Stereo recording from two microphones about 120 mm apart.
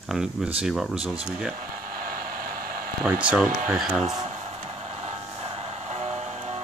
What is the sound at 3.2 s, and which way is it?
Speech, 10° right (ahead or behind).